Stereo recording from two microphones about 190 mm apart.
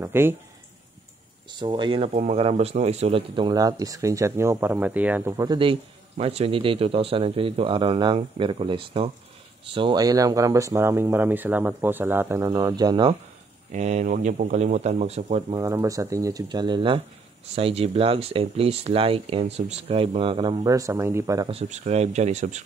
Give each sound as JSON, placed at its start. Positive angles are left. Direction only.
{"t": 0.0, "sound": "speech", "side_deg": -10}
{"t": 1.5, "sound": "speech", "side_deg": -25}
{"t": 13.7, "sound": "speech", "side_deg": -35}
{"t": 15.5, "sound": "speech", "side_deg": -15}
{"t": 21.5, "sound": "speech", "side_deg": -35}